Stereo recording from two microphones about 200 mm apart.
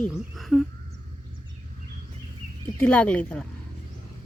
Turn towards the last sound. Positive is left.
turn(degrees=5)  # may be behind; listen again after turning